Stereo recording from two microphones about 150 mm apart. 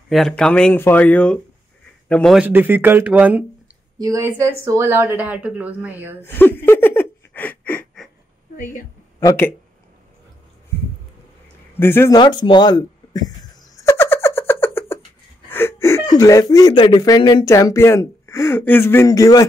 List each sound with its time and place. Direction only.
0.1 s a man's voice: 5° left (ahead or behind)
2.3 s speech: 10° right (ahead or behind)
6.2 s a sound: 15° left (ahead or behind)
11.7 s speech: 15° left (ahead or behind)
12.2 s a sound: 30° left (ahead or behind); by 15.0 s 15° left (ahead or behind)
15.5 s speech: 15° left (ahead or behind)